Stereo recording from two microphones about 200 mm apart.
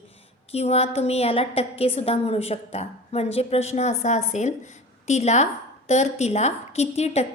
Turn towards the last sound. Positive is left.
turn(degrees=30)  # may be behind; listen again after turning